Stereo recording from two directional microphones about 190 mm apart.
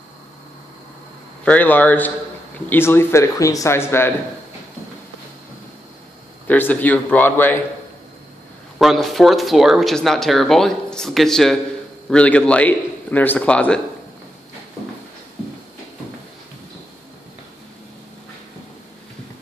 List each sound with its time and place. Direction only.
1.4 s a man's voice: 10° left (ahead or behind)
6.4 s a man's voice: 10° left (ahead or behind)
8.7 s a man's voice: centre (ahead or behind)